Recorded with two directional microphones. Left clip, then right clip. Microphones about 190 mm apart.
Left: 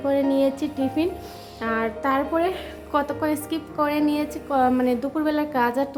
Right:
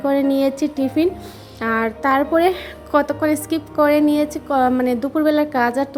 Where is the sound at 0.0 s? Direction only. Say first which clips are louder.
Right 3 dB; 30° right (ahead or behind).